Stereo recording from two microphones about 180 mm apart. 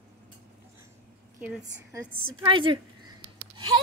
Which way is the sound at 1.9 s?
25° right (ahead or behind).